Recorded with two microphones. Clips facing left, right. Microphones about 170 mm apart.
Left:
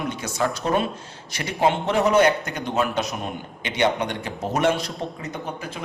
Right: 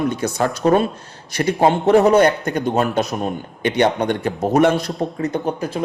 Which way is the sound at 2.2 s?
55° right (ahead or behind).